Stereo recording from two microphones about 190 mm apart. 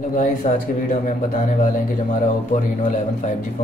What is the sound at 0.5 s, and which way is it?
A man's voice, 40° left (ahead or behind).